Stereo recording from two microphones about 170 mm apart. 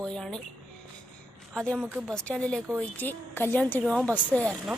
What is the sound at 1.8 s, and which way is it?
Speech, 10° right (ahead or behind).